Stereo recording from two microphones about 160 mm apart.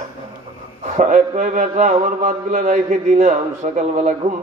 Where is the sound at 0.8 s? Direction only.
50° right (ahead or behind).